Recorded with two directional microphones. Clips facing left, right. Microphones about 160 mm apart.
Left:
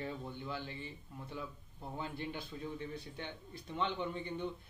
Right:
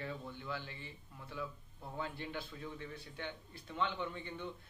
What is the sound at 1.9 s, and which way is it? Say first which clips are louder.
A man's voice: even; 20° left (ahead or behind).